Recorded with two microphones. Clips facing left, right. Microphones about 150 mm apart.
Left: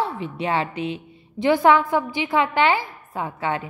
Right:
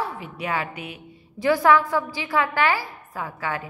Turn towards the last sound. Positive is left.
turn(degrees=25)  # may be behind; listen again after turning